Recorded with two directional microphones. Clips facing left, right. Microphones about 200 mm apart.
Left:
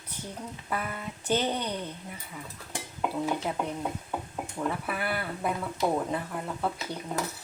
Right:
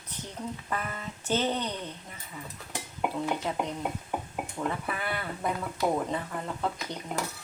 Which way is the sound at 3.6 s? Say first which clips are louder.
Even; 15° right (ahead or behind).